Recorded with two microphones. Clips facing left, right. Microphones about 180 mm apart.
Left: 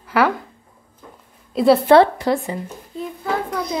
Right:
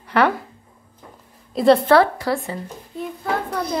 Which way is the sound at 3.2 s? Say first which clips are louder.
Left 1 dB; centre (ahead or behind).